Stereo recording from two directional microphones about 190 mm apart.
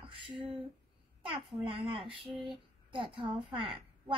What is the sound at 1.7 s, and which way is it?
A child's voice, 30° right (ahead or behind).